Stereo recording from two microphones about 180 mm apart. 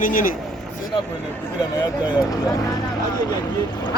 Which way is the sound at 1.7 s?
20° left (ahead or behind).